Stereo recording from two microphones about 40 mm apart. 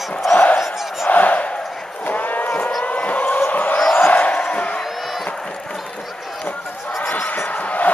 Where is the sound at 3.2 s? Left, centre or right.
Left.